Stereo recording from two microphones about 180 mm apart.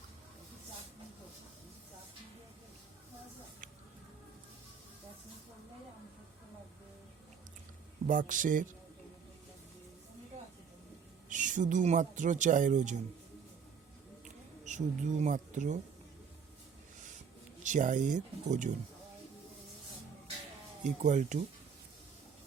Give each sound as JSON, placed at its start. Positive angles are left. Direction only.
{"t": 8.0, "sound": "speech", "side_deg": -45}
{"t": 11.3, "sound": "speech", "side_deg": -45}
{"t": 14.6, "sound": "speech", "side_deg": -40}
{"t": 17.6, "sound": "speech", "side_deg": -45}
{"t": 20.8, "sound": "speech", "side_deg": -40}